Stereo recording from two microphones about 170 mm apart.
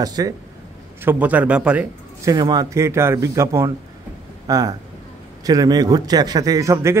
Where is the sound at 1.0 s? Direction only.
10° right (ahead or behind).